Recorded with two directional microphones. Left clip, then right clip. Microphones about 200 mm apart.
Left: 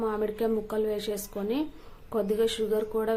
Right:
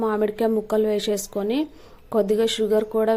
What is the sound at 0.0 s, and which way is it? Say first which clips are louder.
A woman's voice: right 7 dB; 35° right (ahead or behind).